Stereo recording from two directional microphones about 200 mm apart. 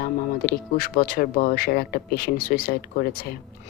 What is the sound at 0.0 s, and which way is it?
Speech, 45° left (ahead or behind).